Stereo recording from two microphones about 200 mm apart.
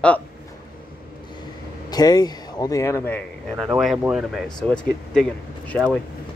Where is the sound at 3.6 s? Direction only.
5° right (ahead or behind).